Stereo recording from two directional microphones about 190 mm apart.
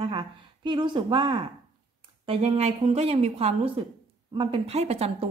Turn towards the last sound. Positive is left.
turn(degrees=-35)  # may be behind; listen again after turning